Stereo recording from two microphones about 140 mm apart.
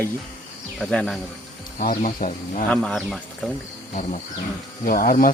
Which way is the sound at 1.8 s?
80° left.